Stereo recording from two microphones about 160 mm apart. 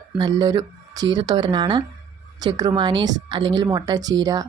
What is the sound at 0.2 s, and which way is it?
Speech, 30° right (ahead or behind).